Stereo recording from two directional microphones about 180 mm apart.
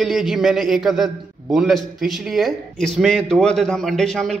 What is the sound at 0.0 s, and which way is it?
A man's voice, centre (ahead or behind).